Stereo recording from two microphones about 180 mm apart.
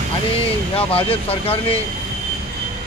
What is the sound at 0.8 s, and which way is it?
Speech, 30° left (ahead or behind).